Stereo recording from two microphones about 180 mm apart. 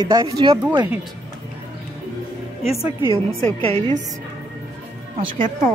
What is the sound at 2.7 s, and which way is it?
Speech, 35° left (ahead or behind).